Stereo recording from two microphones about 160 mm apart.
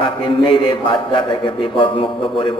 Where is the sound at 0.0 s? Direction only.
35° left (ahead or behind).